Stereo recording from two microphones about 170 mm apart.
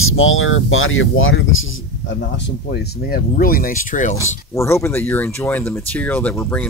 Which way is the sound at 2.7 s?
60° left (ahead or behind).